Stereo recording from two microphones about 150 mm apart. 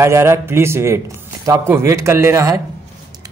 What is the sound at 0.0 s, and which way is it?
Speech, 20° right (ahead or behind).